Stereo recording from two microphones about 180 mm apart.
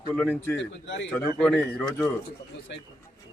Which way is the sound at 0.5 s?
80° left.